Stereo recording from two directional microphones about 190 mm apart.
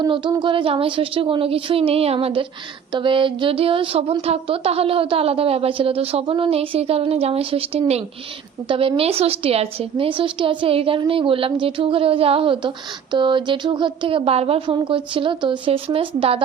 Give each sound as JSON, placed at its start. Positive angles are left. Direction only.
{"t": 0.0, "sound": "a woman's voice", "side_deg": -25}